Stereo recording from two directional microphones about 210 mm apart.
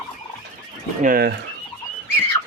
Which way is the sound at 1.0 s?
45° right (ahead or behind).